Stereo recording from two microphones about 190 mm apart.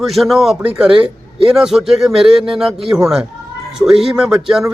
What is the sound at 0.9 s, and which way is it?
Speech, 30° right (ahead or behind).